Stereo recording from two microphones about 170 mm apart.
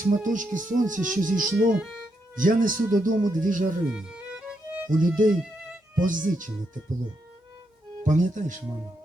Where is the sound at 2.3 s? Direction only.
55° right (ahead or behind).